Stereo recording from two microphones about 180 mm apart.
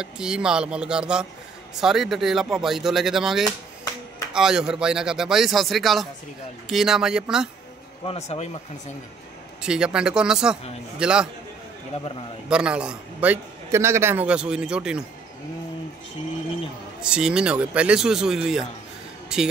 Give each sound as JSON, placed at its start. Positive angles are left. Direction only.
{"t": 0.0, "sound": "a man's voice", "side_deg": -5}
{"t": 8.1, "sound": "speech", "side_deg": 35}
{"t": 9.6, "sound": "a man's voice", "side_deg": -5}
{"t": 12.4, "sound": "a man's voice", "side_deg": -5}
{"t": 17.0, "sound": "a man's voice", "side_deg": -5}